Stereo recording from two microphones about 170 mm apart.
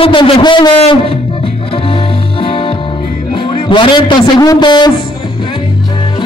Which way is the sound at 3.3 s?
30° left (ahead or behind).